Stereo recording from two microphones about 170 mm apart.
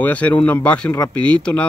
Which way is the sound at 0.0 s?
10° left (ahead or behind).